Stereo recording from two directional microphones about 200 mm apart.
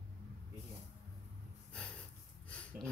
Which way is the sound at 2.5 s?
5° left (ahead or behind).